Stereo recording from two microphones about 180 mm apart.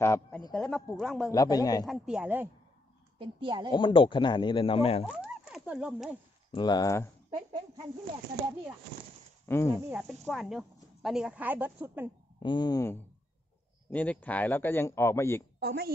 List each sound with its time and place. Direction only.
0.0 s a man's voice: 15° left (ahead or behind)
0.5 s speech: centre (ahead or behind)
1.3 s a man's voice: 20° left (ahead or behind)
1.9 s speech: 5° right (ahead or behind)
3.2 s a woman's voice: 30° right (ahead or behind)
3.7 s a man's voice: 30° left (ahead or behind)
5.0 s speech: 5° right (ahead or behind)
6.5 s a man's voice: 25° left (ahead or behind)
7.2 s speech: 30° right (ahead or behind)
9.5 s speech: 15° left (ahead or behind)
9.8 s speech: 5° right (ahead or behind)
12.4 s a man's voice: 25° left (ahead or behind)
15.6 s a woman's voice: 60° right (ahead or behind)